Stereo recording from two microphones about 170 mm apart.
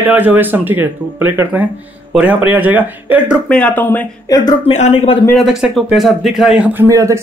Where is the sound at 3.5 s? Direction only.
10° left (ahead or behind).